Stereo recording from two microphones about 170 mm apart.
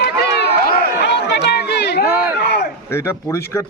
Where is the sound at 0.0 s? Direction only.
80° left.